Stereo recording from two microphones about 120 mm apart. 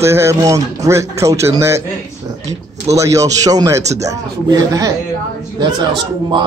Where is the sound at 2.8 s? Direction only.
25° right (ahead or behind).